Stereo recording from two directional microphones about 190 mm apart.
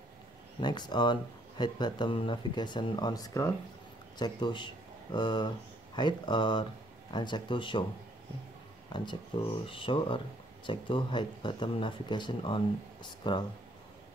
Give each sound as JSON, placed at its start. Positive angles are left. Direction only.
{"t": 0.6, "sound": "speech", "side_deg": 20}
{"t": 8.9, "sound": "speech", "side_deg": 25}